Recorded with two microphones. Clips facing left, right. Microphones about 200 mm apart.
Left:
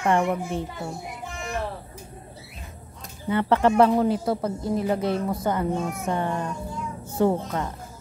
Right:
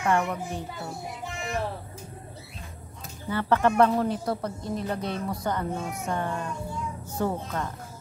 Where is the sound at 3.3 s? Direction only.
20° left (ahead or behind).